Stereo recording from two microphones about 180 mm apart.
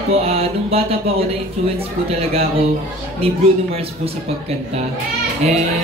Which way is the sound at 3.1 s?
35° right (ahead or behind).